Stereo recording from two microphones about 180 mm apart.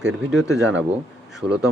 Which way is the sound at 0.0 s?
85° right.